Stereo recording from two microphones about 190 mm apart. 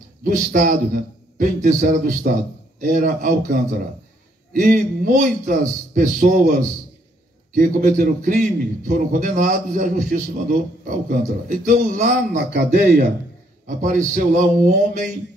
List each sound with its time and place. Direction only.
0.2 s a man's voice: 45° right (ahead or behind)
4.6 s a man's voice: 45° right (ahead or behind)
7.5 s a man's voice: 45° right (ahead or behind)
12.5 s speech: 60° right (ahead or behind)
13.7 s a man's voice: 40° right (ahead or behind)